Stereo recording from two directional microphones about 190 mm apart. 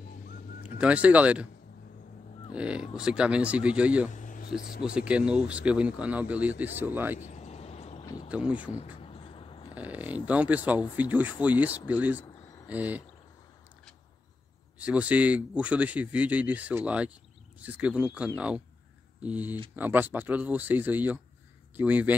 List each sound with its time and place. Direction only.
0.7 s speech: 5° right (ahead or behind)
2.5 s speech: 5° right (ahead or behind)
4.1 s a sound: 45° left (ahead or behind)
4.6 s speech: 50° left (ahead or behind)
4.8 s speech: 5° right (ahead or behind)
7.2 s a sound: 35° left (ahead or behind)
8.0 s a sound: 20° left (ahead or behind)
8.3 s speech: 5° right (ahead or behind)
8.8 s vehicle: 25° left (ahead or behind)
9.8 s speech: 10° right (ahead or behind)
14.8 s speech: 5° right (ahead or behind)